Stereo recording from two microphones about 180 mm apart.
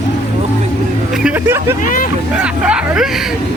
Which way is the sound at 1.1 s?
5° right (ahead or behind).